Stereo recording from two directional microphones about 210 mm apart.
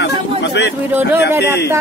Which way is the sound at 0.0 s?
55° left (ahead or behind).